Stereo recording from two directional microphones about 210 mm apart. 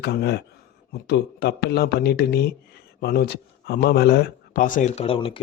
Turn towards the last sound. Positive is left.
turn(degrees=25)  # may be behind; listen again after turning